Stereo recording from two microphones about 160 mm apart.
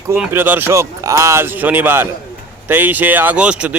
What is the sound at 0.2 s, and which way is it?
Speech, 15° right (ahead or behind).